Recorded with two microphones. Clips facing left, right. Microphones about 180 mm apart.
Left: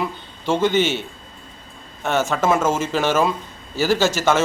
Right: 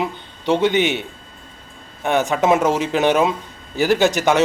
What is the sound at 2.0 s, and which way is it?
A man's voice, 15° right (ahead or behind).